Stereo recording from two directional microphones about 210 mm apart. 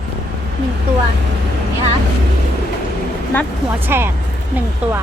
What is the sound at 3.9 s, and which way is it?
Speech, 10° right (ahead or behind).